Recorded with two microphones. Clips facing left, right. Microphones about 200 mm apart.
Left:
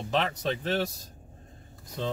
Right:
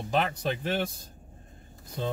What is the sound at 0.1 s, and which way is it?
Speech, 5° right (ahead or behind).